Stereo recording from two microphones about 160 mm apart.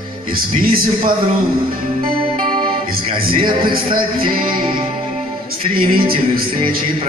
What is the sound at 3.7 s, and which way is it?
Music, 65° right (ahead or behind).